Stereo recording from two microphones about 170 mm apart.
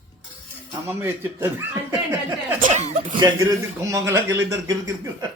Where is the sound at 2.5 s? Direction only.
50° right (ahead or behind).